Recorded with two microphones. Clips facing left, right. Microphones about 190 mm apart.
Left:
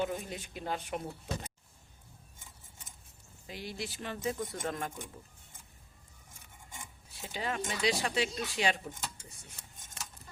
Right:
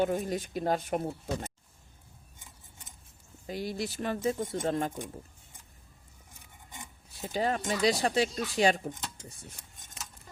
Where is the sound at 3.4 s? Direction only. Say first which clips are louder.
Right 7 dB; 40° right (ahead or behind).